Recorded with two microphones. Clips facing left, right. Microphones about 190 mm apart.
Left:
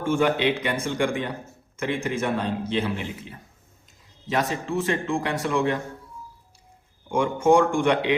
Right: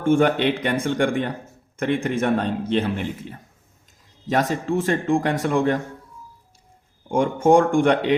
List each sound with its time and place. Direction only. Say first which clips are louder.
0.0 s speech: right 4 dB; 50° right (ahead or behind)
7.1 s speech: right 3 dB; 45° right (ahead or behind)